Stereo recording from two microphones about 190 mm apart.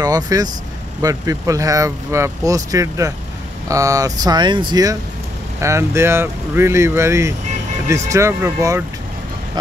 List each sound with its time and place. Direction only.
0.0 s speech: 20° right (ahead or behind)